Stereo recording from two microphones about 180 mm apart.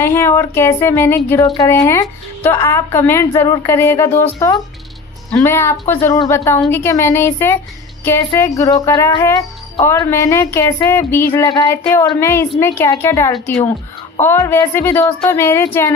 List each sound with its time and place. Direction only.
0.0 s speech: 15° left (ahead or behind)
5.3 s speech: 15° left (ahead or behind)